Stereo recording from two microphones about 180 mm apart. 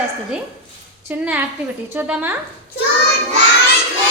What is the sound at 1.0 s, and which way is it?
A woman's voice, 10° right (ahead or behind).